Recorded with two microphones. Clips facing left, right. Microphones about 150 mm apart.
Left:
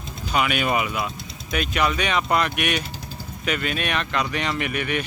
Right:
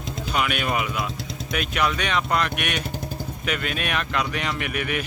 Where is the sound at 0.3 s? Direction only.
Centre (ahead or behind).